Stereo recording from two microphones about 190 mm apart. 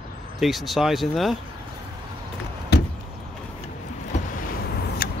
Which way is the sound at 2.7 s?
60° left (ahead or behind).